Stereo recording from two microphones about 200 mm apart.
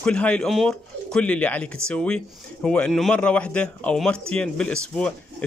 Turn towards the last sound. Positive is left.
turn(degrees=5)  # may be behind; listen again after turning